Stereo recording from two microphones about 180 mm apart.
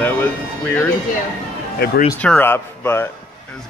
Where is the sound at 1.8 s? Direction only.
55° left (ahead or behind).